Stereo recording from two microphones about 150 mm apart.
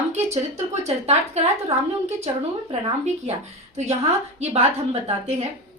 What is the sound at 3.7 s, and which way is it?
Speech, 45° right (ahead or behind).